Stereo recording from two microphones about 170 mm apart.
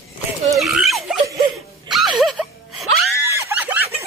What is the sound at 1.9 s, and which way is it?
Music, centre (ahead or behind).